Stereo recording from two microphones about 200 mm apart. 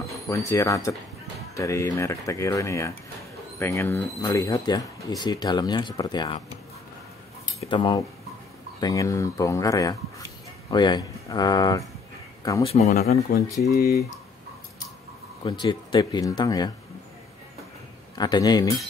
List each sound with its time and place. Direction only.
0.3 s speech: 15° left (ahead or behind)
7.6 s speech: 25° left (ahead or behind)
12.6 s speech: 30° left (ahead or behind)
12.9 s speech: 50° left (ahead or behind)
13.6 s speech: 15° left (ahead or behind)
15.4 s speech: 20° left (ahead or behind)
18.1 s speech: 20° left (ahead or behind)